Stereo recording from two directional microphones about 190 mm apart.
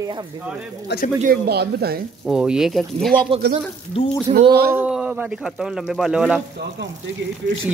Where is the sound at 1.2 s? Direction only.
55° right (ahead or behind).